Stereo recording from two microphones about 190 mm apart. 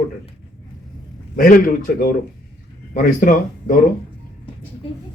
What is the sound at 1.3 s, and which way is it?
Speech, 45° left (ahead or behind).